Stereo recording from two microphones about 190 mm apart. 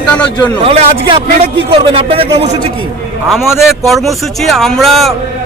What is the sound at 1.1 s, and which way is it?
A man's voice, 25° right (ahead or behind).